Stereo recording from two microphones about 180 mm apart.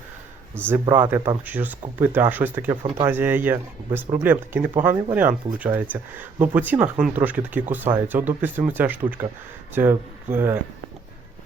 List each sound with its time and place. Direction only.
0.5 s speech: 10° right (ahead or behind)